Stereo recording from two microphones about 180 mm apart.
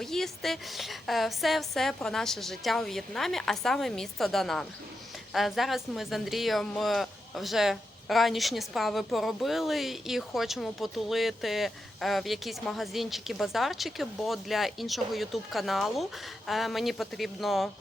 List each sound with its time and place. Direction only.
0.0 s a woman's voice: centre (ahead or behind)